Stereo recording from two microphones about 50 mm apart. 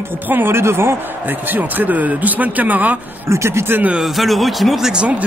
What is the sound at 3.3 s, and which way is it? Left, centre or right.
Speech, right.